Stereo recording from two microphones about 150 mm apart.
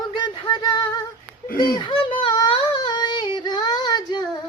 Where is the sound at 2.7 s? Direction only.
30° left (ahead or behind).